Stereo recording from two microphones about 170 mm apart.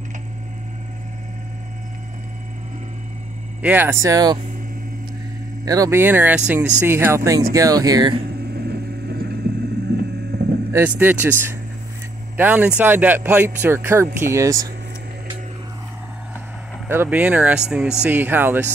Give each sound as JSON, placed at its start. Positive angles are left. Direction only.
{"t": 3.6, "sound": "speech", "side_deg": -10}
{"t": 5.7, "sound": "speech", "side_deg": -20}
{"t": 8.6, "sound": "vehicle", "side_deg": -65}
{"t": 9.9, "sound": "a sound", "side_deg": -65}
{"t": 10.3, "sound": "vehicle", "side_deg": -65}
{"t": 10.7, "sound": "speech", "side_deg": -10}
{"t": 16.9, "sound": "speech", "side_deg": -10}